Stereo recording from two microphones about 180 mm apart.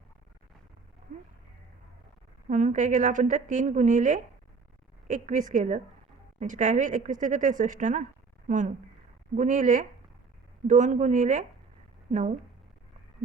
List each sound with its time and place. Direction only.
1.1 s a woman's voice: 50° right (ahead or behind)
2.5 s a woman's voice: 45° right (ahead or behind)